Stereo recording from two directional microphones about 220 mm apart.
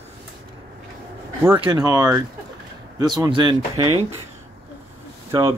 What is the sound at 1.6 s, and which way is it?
Speech, 20° right (ahead or behind).